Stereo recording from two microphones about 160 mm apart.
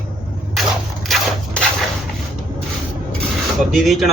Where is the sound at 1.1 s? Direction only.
Centre (ahead or behind).